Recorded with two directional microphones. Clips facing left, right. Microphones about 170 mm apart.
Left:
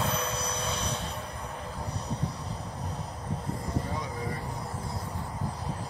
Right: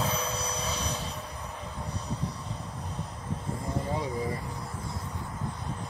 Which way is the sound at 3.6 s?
30° right (ahead or behind).